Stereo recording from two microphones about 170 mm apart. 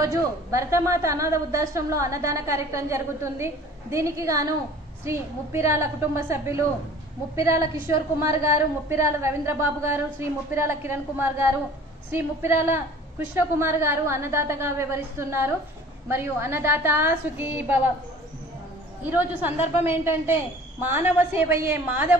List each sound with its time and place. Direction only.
0.0 s a woman's voice: 20° right (ahead or behind)
19.0 s a woman's voice: 10° right (ahead or behind)